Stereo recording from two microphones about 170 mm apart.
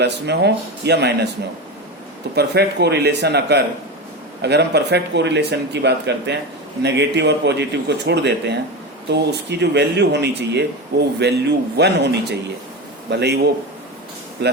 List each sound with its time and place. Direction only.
0.0 s speech: 80° right
2.3 s a man's voice: 75° right (ahead or behind)
14.4 s speech: 90° right